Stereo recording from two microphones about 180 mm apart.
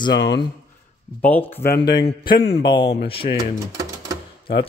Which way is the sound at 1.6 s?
60° left (ahead or behind).